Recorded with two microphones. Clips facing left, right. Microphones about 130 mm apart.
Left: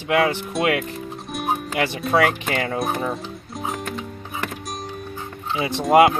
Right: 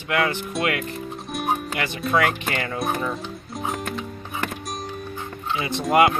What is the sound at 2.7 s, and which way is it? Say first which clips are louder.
Speech: left 2 dB; centre (ahead or behind).